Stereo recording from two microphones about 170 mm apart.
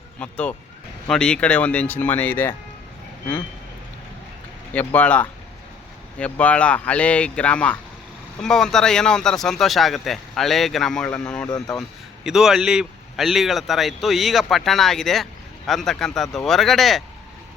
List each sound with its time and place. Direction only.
0.2 s speech: 5° left (ahead or behind)
4.7 s speech: 10° left (ahead or behind)
11.4 s speech: 25° left (ahead or behind)
11.8 s speech: centre (ahead or behind)